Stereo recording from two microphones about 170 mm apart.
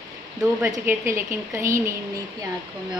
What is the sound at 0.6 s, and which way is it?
A woman's voice, 15° right (ahead or behind).